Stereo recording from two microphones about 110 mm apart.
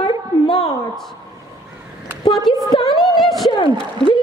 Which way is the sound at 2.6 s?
40° left (ahead or behind).